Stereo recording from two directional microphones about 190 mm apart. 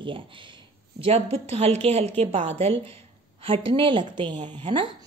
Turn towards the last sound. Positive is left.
turn(degrees=-25)  # may be behind; listen again after turning